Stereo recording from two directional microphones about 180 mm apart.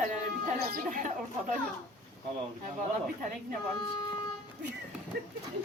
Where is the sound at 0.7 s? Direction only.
50° right (ahead or behind).